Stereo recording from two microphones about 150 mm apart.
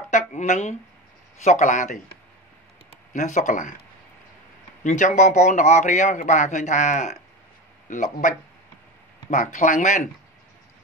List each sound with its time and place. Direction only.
0.1 s a man's voice: 50° left (ahead or behind)
3.1 s speech: 55° left (ahead or behind)
4.8 s a man's voice: 55° left (ahead or behind)